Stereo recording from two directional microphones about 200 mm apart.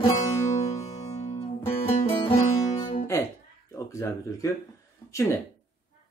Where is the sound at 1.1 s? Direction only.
30° left (ahead or behind).